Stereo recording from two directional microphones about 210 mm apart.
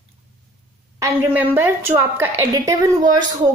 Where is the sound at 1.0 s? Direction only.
10° right (ahead or behind).